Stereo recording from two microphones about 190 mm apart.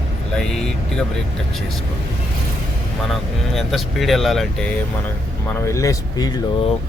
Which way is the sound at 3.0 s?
Centre (ahead or behind).